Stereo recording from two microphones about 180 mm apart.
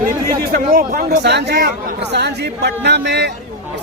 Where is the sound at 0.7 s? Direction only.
55° right (ahead or behind).